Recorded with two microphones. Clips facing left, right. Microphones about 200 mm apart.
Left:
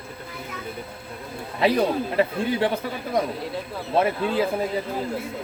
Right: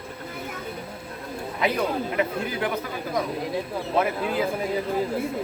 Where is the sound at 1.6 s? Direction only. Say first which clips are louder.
Left 4 dB; 30° left (ahead or behind).